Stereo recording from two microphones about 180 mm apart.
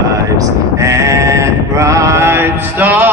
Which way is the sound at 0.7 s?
15° right (ahead or behind).